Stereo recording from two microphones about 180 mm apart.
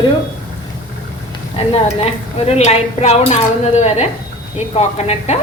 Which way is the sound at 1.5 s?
35° left (ahead or behind).